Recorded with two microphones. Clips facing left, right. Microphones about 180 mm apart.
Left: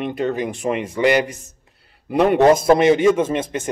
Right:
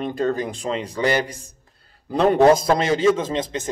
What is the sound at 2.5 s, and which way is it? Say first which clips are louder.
Speech: left 4 dB; 15° left (ahead or behind).